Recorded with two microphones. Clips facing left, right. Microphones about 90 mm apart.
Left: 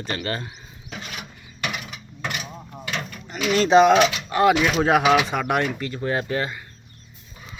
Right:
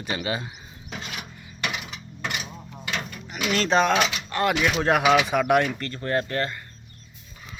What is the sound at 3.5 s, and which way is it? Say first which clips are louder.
Speech: left 6 dB; 5° left (ahead or behind).